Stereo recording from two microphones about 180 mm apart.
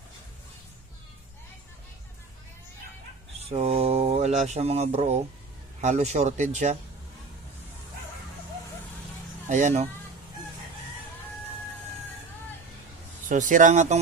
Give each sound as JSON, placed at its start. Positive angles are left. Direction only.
{"t": 3.3, "sound": "a man's voice", "side_deg": -35}
{"t": 9.5, "sound": "a man's voice", "side_deg": -40}
{"t": 13.3, "sound": "speech", "side_deg": -45}